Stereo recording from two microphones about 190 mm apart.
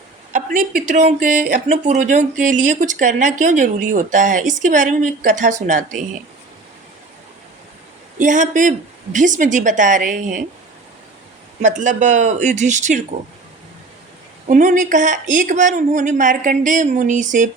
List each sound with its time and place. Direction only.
0.3 s speech: 45° right (ahead or behind)
8.2 s speech: 40° right (ahead or behind)
11.6 s speech: 40° right (ahead or behind)
14.4 s speech: 40° right (ahead or behind)